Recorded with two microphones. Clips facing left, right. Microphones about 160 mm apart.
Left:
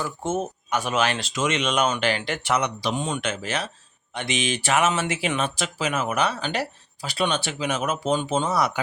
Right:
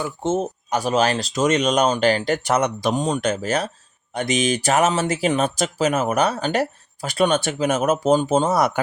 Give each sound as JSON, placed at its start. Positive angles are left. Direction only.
{"t": 0.0, "sound": "speech", "side_deg": -25}